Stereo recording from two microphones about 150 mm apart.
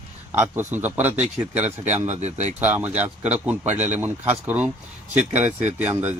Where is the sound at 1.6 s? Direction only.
50° right (ahead or behind).